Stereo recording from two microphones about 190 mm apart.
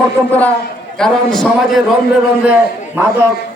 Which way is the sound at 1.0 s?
Centre (ahead or behind).